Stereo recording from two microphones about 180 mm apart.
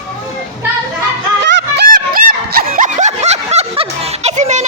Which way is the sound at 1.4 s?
75° right (ahead or behind).